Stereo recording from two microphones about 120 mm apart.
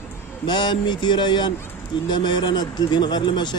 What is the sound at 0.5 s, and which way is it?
A man's voice, 40° left (ahead or behind).